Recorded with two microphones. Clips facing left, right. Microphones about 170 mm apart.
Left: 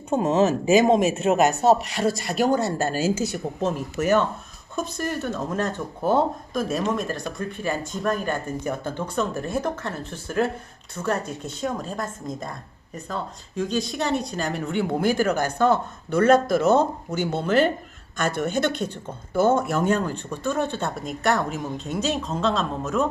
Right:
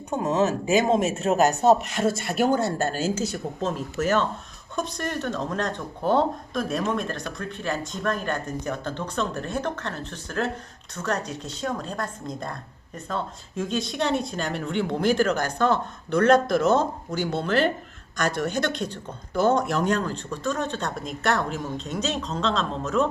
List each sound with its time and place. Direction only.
0.1 s speech: 20° left (ahead or behind); by 12.0 s 5° left (ahead or behind)
13.1 s speech: centre (ahead or behind)